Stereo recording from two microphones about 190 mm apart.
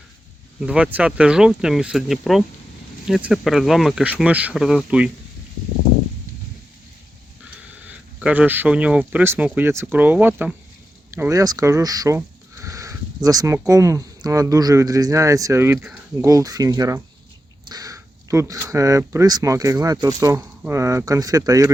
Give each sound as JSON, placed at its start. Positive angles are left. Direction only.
{"t": 0.6, "sound": "speech", "side_deg": -5}
{"t": 7.9, "sound": "speech", "side_deg": -10}